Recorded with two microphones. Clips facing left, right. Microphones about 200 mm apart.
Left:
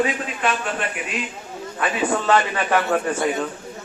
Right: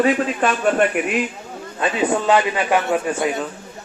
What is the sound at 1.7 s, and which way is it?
A man's voice, 20° right (ahead or behind).